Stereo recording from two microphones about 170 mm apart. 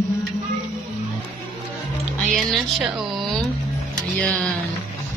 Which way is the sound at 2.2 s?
Centre (ahead or behind).